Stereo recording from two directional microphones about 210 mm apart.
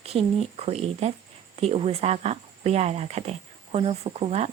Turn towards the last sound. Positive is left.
turn(degrees=-30)  # may be behind; listen again after turning